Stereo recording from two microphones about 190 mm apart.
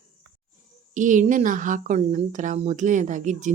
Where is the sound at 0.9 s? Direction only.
40° right (ahead or behind).